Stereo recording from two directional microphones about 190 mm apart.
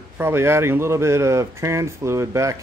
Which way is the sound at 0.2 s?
15° right (ahead or behind).